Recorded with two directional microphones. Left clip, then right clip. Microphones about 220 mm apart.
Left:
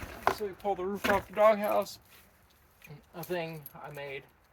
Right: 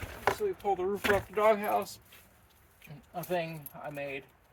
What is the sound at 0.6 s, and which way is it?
Speech, 40° left (ahead or behind).